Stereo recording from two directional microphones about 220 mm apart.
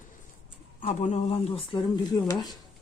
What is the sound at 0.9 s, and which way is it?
Speech, 30° left (ahead or behind).